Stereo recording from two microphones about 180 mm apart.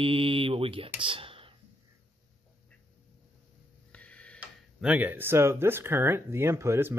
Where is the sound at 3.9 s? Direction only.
5° left (ahead or behind).